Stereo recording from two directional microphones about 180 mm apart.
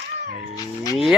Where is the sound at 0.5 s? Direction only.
20° left (ahead or behind).